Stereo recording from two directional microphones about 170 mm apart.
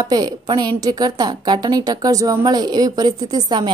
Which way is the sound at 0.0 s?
25° right (ahead or behind).